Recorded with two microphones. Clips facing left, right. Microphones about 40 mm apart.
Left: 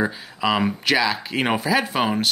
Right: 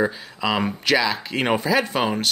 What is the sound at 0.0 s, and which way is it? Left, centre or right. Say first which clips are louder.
Speech: even; centre.